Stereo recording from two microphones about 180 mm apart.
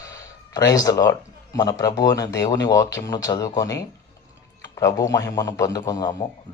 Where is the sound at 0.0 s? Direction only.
20° left (ahead or behind).